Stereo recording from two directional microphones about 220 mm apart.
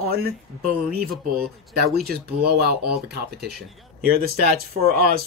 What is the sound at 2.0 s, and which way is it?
Speech, 45° right (ahead or behind).